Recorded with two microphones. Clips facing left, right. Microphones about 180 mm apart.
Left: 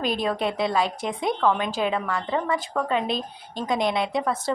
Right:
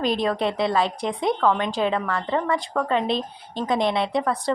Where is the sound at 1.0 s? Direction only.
Centre (ahead or behind).